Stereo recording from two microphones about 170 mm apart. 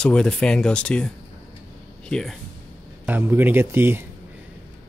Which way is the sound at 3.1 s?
10° right (ahead or behind).